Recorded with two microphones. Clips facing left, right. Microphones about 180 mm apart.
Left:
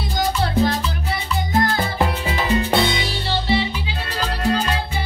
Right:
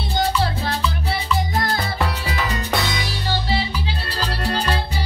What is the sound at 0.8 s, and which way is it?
Music, 40° left (ahead or behind).